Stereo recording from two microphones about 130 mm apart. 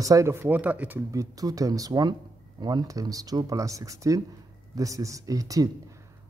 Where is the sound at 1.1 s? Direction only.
25° right (ahead or behind).